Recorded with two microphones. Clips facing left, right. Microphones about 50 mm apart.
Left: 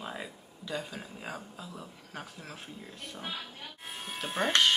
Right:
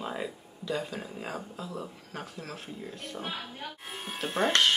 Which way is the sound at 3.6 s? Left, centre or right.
Centre.